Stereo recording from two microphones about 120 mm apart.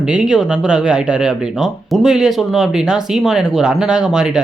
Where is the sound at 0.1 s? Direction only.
5° right (ahead or behind).